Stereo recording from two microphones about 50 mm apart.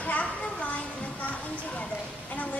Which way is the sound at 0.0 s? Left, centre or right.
Left.